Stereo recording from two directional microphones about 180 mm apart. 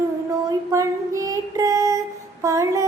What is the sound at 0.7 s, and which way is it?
Child singing, 15° right (ahead or behind).